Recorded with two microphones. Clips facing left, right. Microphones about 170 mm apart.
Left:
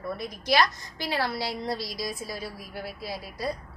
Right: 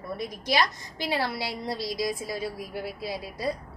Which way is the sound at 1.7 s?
20° right (ahead or behind).